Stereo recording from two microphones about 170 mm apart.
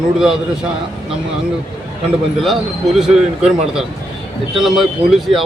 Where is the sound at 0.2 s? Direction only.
5° right (ahead or behind).